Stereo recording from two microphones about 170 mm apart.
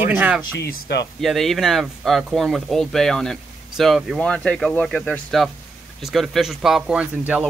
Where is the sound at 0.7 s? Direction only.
75° left (ahead or behind).